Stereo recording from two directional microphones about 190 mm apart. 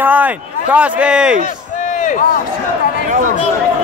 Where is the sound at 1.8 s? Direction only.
40° left (ahead or behind).